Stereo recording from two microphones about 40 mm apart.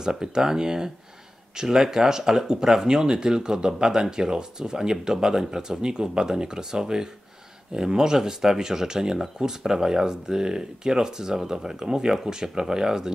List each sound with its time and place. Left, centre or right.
0.0 s speech: centre